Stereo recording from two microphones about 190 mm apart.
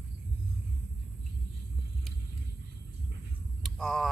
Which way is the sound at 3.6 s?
Centre (ahead or behind).